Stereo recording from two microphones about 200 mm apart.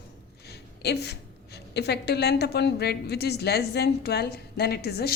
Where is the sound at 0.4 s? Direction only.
55° left (ahead or behind).